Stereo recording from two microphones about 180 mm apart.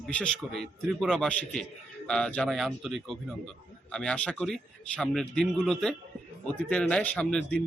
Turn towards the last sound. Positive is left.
turn(degrees=5)  # may be behind; listen again after turning